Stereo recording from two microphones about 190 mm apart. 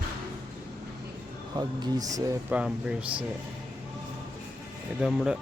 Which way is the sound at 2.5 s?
5° right (ahead or behind).